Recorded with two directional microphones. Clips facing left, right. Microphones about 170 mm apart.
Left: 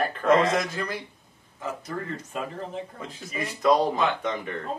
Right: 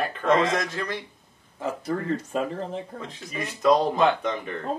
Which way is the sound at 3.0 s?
5° left (ahead or behind).